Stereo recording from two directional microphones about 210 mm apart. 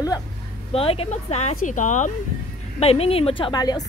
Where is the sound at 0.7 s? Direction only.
25° left (ahead or behind).